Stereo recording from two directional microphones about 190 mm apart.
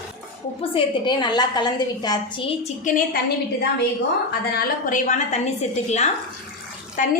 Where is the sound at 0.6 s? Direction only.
25° left (ahead or behind).